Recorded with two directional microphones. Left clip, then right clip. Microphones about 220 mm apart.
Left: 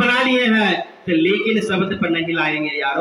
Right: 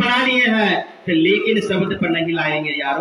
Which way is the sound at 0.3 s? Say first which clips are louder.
Right 1 dB; 20° right (ahead or behind).